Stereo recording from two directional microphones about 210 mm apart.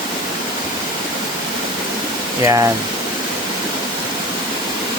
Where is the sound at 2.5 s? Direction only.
15° right (ahead or behind).